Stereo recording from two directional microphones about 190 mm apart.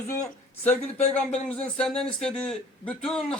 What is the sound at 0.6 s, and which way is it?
A man's voice, 10° left (ahead or behind).